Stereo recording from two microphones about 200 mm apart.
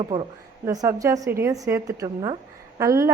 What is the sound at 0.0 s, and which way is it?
A woman's voice, 25° right (ahead or behind).